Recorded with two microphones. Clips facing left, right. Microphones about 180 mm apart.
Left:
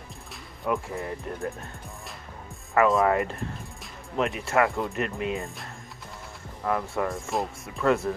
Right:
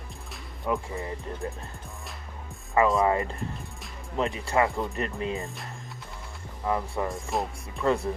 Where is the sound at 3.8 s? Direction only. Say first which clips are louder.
Left 1 dB; centre (ahead or behind).